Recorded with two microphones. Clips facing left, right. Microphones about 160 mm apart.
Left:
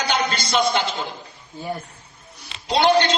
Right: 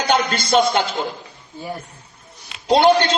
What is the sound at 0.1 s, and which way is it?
Speech, 50° right (ahead or behind).